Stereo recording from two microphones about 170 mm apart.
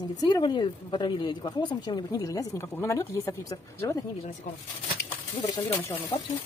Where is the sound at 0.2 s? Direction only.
25° left (ahead or behind).